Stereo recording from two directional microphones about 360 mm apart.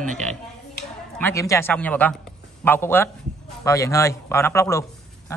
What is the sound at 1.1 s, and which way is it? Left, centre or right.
A man's voice, centre.